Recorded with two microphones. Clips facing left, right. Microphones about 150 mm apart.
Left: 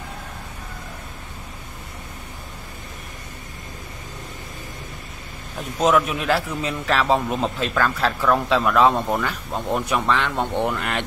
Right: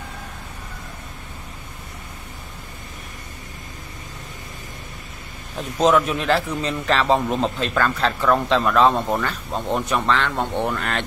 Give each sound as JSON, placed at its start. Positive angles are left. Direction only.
{"t": 5.6, "sound": "a man's voice", "side_deg": 5}